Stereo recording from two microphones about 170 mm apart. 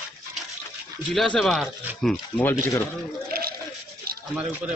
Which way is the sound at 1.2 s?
Centre (ahead or behind).